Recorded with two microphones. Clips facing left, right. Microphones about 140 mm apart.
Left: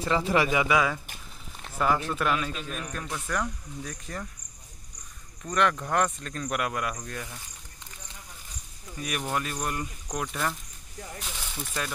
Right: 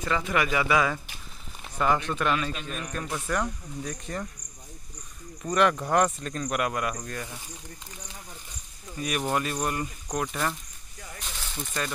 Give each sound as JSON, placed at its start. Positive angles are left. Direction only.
{"t": 0.0, "sound": "speech", "side_deg": 30}
{"t": 0.5, "sound": "speech", "side_deg": 15}
{"t": 5.4, "sound": "speech", "side_deg": -10}
{"t": 8.9, "sound": "speech", "side_deg": 0}
{"t": 11.1, "sound": "a sound", "side_deg": 5}